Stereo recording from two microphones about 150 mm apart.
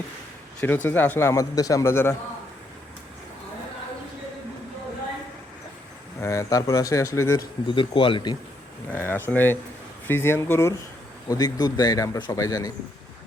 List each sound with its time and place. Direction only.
0.6 s a man's voice: 15° left (ahead or behind)
6.1 s speech: 20° left (ahead or behind)
7.7 s speech: 35° left (ahead or behind)
8.9 s a man's voice: 15° left (ahead or behind)